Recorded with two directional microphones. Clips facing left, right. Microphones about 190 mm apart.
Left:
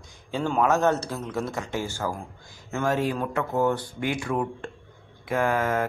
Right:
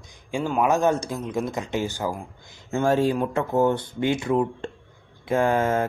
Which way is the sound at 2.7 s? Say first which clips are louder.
Right 4 dB; 30° right (ahead or behind).